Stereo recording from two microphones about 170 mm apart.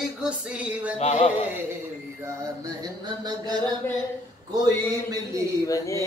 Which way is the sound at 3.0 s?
25° right (ahead or behind).